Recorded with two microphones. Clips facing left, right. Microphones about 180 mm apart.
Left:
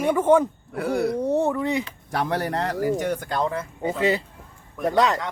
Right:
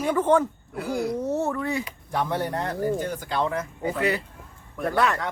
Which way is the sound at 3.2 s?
45° left (ahead or behind).